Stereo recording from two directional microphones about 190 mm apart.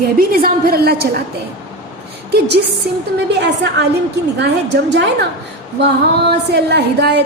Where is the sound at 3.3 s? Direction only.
65° right (ahead or behind).